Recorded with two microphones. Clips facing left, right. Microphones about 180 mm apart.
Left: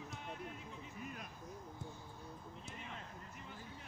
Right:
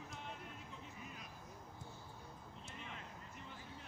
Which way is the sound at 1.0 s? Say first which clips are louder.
Left 5 dB; 55° left (ahead or behind).